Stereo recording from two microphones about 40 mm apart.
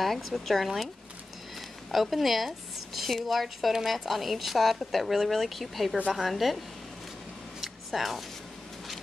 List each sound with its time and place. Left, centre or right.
0.0 s a woman's voice: centre
1.9 s a woman's voice: centre
7.6 s a sound: centre